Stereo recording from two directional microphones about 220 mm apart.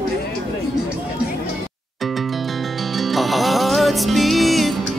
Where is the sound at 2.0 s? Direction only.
Centre (ahead or behind).